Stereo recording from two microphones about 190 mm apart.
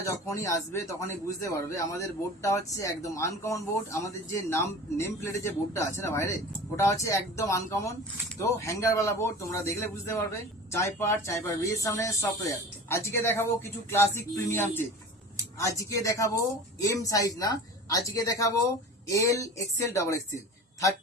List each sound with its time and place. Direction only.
0.0 s a man's voice: 15° left (ahead or behind)